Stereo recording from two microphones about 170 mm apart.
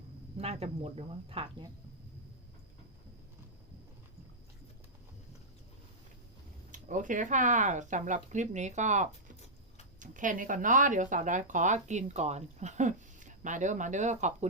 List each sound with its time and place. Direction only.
0.3 s speech: 35° right (ahead or behind)
6.7 s speech: 50° right (ahead or behind)